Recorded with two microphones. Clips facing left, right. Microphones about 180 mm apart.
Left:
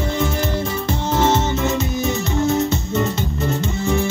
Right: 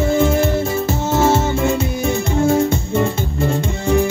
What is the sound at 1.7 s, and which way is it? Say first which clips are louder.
Music: right 2 dB; 30° right (ahead or behind).